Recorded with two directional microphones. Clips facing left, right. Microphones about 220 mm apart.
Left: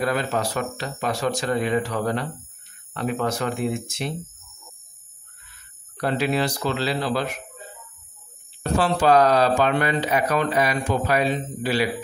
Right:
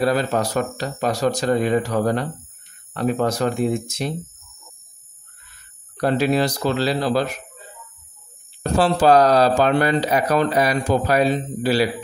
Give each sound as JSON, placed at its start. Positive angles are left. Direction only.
{"t": 0.0, "sound": "speech", "side_deg": -35}
{"t": 5.9, "sound": "speech", "side_deg": -40}
{"t": 8.7, "sound": "speech", "side_deg": -35}